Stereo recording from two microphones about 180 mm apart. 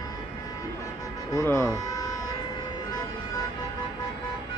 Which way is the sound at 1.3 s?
15° left (ahead or behind).